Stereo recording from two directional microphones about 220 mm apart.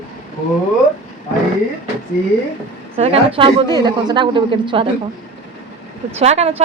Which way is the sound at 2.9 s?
25° right (ahead or behind).